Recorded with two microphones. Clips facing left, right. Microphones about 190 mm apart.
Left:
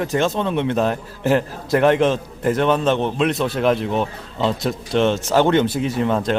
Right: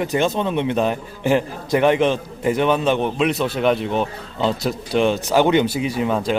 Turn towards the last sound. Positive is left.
turn(degrees=-5)  # may be behind; listen again after turning